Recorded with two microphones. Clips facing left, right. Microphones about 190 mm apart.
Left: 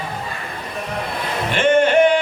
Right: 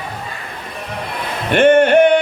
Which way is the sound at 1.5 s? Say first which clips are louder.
Right 5 dB; 60° right (ahead or behind).